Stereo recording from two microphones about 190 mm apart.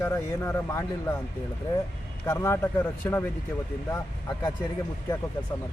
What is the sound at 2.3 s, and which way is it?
Speech, 15° left (ahead or behind).